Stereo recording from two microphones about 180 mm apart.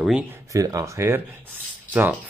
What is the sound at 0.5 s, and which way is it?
Speech, 20° right (ahead or behind).